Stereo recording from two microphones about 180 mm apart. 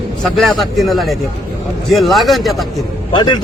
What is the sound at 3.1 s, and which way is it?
Speech, 25° left (ahead or behind).